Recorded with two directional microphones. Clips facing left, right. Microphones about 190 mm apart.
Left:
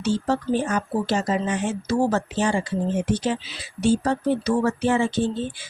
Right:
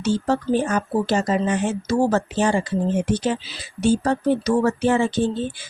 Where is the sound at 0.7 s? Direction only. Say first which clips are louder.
Right 2 dB; 50° right (ahead or behind).